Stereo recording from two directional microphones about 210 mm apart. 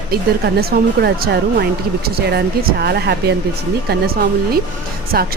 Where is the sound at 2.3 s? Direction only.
50° right (ahead or behind).